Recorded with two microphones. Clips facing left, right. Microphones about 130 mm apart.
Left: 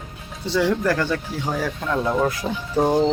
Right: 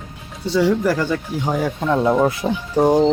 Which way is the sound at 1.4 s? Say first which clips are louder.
Right 7 dB; 20° right (ahead or behind).